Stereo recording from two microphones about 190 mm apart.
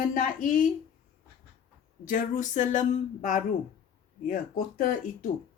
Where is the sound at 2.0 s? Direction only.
45° left (ahead or behind).